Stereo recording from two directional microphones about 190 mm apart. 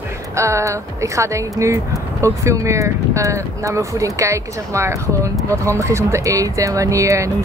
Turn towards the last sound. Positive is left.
turn(degrees=-15)  # may be behind; listen again after turning